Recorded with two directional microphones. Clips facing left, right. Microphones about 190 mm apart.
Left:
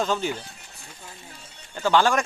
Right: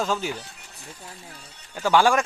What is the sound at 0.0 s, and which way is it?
Speech, 5° right (ahead or behind).